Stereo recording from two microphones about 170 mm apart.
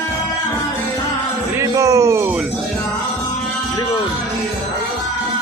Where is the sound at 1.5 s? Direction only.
20° right (ahead or behind).